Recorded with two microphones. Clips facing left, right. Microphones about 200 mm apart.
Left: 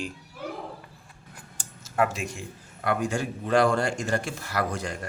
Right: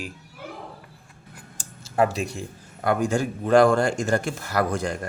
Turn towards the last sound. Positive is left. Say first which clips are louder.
# right 5 dB
turn(degrees=-45)  # may be behind; listen again after turning